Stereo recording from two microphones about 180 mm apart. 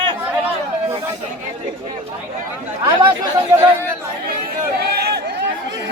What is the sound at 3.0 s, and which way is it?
Speech, 20° right (ahead or behind).